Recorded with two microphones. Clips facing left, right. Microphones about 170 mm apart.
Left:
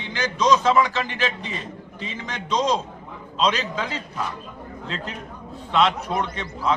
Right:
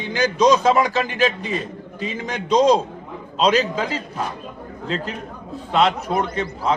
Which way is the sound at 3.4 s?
40° right (ahead or behind).